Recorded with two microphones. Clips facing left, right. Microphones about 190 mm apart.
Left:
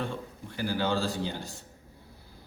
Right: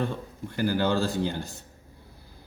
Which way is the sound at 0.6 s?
45° right (ahead or behind).